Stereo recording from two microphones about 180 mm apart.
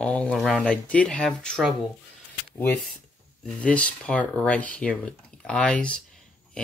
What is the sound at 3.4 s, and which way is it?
Speech, 5° left (ahead or behind).